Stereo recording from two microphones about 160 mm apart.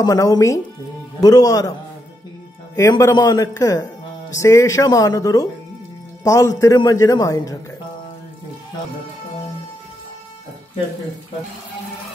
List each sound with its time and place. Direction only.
0.0 s a man's voice: 20° left (ahead or behind)
2.7 s a man's voice: 20° left (ahead or behind)